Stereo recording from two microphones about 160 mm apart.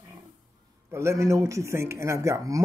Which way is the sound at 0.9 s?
20° right (ahead or behind).